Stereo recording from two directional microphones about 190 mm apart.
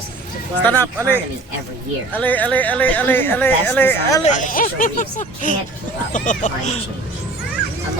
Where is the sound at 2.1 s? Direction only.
10° left (ahead or behind).